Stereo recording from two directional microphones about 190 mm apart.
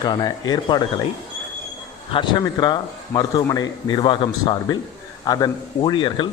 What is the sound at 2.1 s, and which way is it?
Speech, 25° left (ahead or behind).